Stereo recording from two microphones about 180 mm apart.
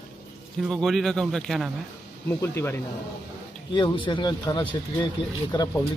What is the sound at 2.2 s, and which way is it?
Speech, 15° left (ahead or behind).